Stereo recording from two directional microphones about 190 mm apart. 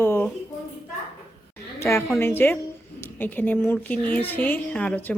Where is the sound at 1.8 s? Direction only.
15° left (ahead or behind).